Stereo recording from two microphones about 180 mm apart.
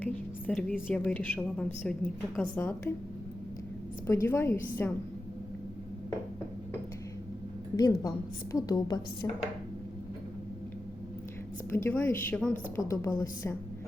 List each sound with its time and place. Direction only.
0.0 s a woman's voice: 10° left (ahead or behind)
4.0 s a woman's voice: 15° left (ahead or behind)
7.8 s a woman's voice: 20° left (ahead or behind)
11.7 s a woman's voice: 10° left (ahead or behind)
12.9 s a woman's voice: 15° left (ahead or behind)